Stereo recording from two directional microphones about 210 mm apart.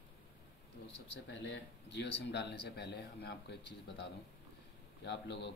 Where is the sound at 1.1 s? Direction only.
60° left (ahead or behind).